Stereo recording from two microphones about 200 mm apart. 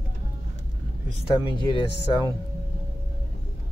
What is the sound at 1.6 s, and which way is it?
Speech, 20° left (ahead or behind).